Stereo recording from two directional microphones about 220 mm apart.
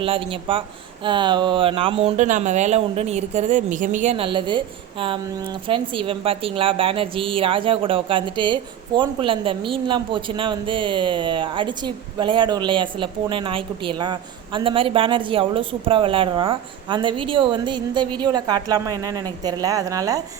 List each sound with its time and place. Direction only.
0.0 s a man's voice: 25° right (ahead or behind)